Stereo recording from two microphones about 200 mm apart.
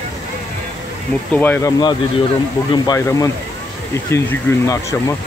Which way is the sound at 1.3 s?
10° left (ahead or behind).